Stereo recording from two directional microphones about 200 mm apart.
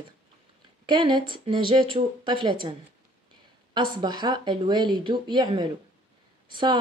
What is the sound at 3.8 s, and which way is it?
A woman's voice, 25° right (ahead or behind).